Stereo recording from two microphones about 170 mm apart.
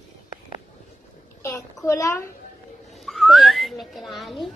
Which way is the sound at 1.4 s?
15° left (ahead or behind).